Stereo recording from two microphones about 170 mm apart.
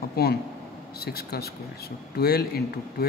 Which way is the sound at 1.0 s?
65° left (ahead or behind).